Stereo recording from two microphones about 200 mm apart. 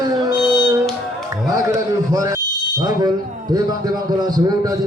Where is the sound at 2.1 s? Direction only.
15° right (ahead or behind).